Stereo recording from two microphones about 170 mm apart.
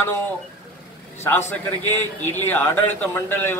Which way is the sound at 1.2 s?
15° left (ahead or behind).